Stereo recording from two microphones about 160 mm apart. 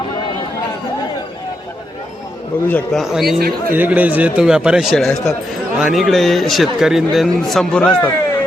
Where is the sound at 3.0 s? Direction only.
Centre (ahead or behind).